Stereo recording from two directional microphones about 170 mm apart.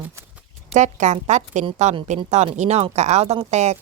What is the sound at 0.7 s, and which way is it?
A woman's voice, 45° right (ahead or behind).